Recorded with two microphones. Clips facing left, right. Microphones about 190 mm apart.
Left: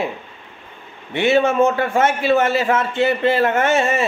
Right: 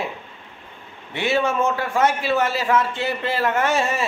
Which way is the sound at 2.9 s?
60° left (ahead or behind).